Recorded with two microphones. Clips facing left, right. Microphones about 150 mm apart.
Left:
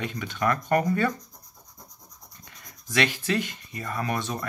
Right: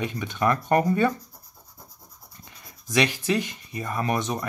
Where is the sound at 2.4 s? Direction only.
20° right (ahead or behind).